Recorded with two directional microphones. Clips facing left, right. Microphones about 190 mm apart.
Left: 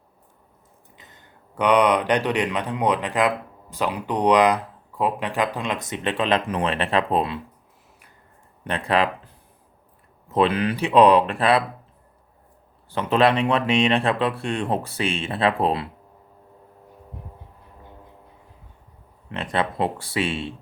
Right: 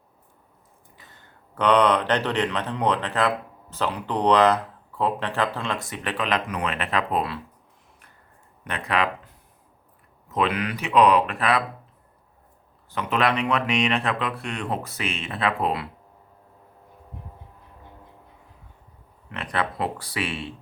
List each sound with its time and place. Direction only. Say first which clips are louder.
1.5 s speech: left 1 dB; 15° left (ahead or behind)
8.6 s speech: left 4 dB; 30° left (ahead or behind)
12.9 s speech: left 5 dB; 30° left (ahead or behind)
19.3 s speech: left 3 dB; 25° left (ahead or behind)